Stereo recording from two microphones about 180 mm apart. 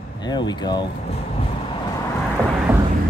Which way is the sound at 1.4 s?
30° left (ahead or behind).